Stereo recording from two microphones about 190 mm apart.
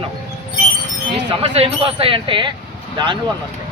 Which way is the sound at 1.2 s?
30° right (ahead or behind).